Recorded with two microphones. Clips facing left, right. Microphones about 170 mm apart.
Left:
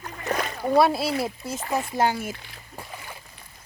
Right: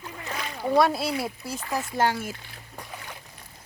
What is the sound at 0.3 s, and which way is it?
Boat, 50° left (ahead or behind).